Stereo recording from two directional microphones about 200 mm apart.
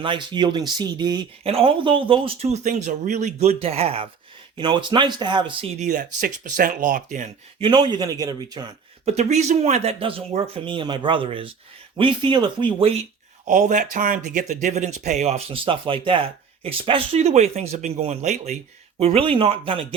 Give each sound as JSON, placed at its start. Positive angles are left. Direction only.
{"t": 0.0, "sound": "speech", "side_deg": -25}
{"t": 5.8, "sound": "speech", "side_deg": -40}
{"t": 7.6, "sound": "speech", "side_deg": -20}
{"t": 9.0, "sound": "speech", "side_deg": -35}